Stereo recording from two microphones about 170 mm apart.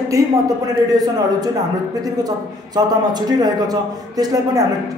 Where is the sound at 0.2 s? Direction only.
20° right (ahead or behind).